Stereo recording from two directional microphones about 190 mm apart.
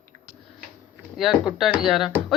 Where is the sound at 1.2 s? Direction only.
Centre (ahead or behind).